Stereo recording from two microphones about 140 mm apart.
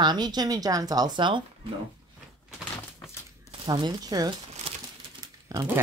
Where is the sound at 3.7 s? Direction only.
30° right (ahead or behind).